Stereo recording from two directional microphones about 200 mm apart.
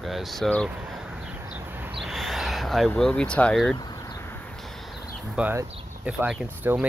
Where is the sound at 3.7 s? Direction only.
20° left (ahead or behind).